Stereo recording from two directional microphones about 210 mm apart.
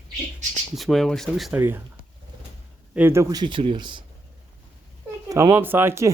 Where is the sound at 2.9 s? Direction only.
10° right (ahead or behind).